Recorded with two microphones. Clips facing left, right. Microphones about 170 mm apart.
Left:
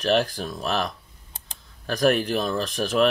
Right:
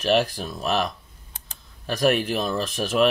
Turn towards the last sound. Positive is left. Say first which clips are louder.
# even
turn(degrees=0)  # may be behind; listen again after turning